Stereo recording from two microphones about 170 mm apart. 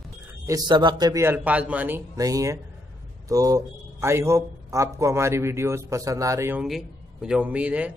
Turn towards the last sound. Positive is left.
turn(degrees=-10)  # may be behind; listen again after turning